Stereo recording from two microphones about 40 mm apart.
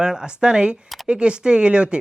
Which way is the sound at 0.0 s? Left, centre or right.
Centre.